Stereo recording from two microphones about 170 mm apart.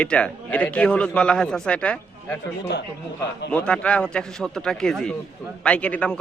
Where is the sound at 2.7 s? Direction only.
80° left.